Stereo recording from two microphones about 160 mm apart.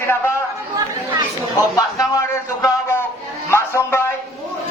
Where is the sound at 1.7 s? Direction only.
20° left (ahead or behind).